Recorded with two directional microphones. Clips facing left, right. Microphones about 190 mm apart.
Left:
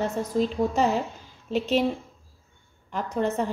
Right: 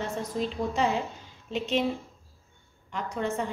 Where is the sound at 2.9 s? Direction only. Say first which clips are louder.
Left 4 dB; 40° left (ahead or behind).